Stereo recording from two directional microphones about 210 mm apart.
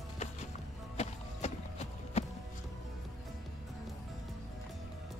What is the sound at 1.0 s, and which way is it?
Music, 30° left (ahead or behind).